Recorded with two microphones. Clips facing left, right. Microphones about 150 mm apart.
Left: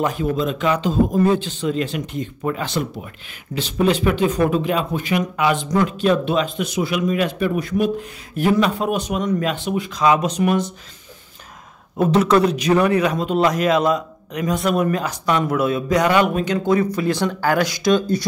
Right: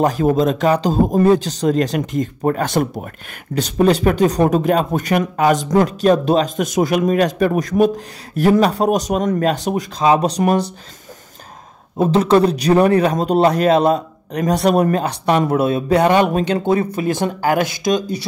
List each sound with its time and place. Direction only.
0.0 s a man's voice: 40° right (ahead or behind)
12.0 s a man's voice: 30° right (ahead or behind)